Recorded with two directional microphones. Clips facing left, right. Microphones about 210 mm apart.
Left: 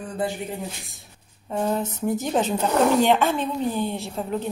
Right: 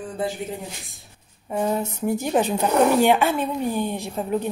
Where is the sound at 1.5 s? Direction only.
10° right (ahead or behind).